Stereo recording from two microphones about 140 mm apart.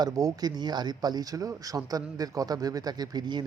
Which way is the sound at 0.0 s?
25° right (ahead or behind).